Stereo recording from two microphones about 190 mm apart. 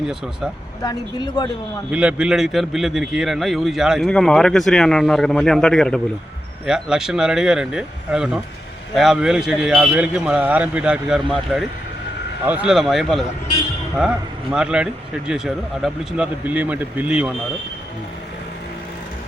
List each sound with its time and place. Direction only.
0.8 s speech: 20° left (ahead or behind)
1.9 s a man's voice: 5° right (ahead or behind)